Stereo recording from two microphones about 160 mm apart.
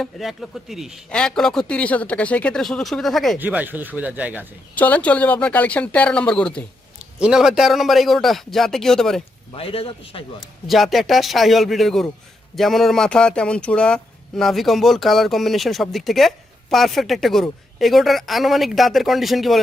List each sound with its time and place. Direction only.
0.0 s speech: centre (ahead or behind)
3.3 s speech: 10° right (ahead or behind)
4.7 s speech: 10° left (ahead or behind)
9.5 s a man's voice: 35° left (ahead or behind)
10.7 s speech: centre (ahead or behind)